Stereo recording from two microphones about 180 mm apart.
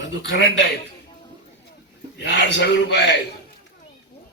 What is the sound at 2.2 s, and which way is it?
Speech, 80° left.